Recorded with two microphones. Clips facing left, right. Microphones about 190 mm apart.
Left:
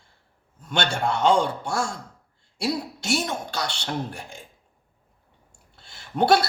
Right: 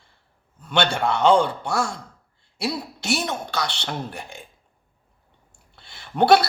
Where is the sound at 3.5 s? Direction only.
60° right (ahead or behind).